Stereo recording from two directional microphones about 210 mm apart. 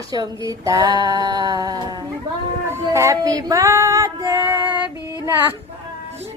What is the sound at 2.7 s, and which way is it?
Female singing, 15° right (ahead or behind).